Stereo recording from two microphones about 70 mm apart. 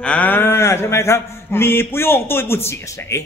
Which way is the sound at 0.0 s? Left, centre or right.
Centre.